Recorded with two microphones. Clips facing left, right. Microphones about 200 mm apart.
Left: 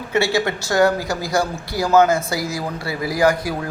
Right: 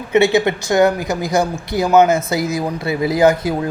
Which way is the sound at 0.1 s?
20° right (ahead or behind).